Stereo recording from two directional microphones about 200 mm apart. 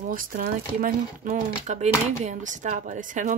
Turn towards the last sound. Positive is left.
turn(degrees=-40)  # may be behind; listen again after turning